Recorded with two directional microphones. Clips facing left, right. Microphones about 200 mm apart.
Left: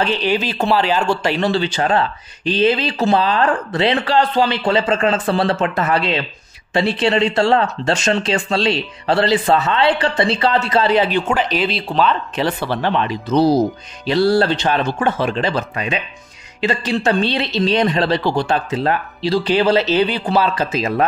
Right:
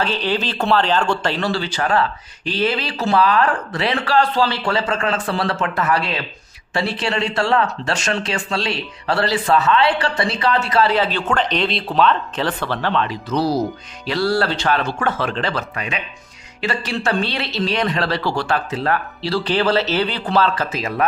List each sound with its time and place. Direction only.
0.0 s speech: 15° left (ahead or behind)
12.4 s speech: 10° left (ahead or behind)